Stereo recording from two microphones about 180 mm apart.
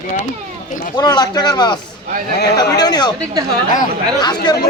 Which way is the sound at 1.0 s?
20° left (ahead or behind).